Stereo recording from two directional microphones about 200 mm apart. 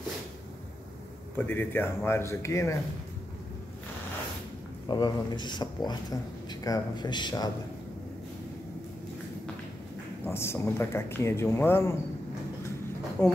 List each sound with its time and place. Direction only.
1.3 s speech: 10° left (ahead or behind)
4.8 s a man's voice: 20° left (ahead or behind)
10.2 s speech: 10° left (ahead or behind)
13.2 s speech: 5° left (ahead or behind)